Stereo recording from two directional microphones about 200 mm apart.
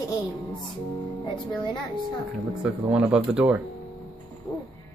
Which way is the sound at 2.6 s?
5° right (ahead or behind).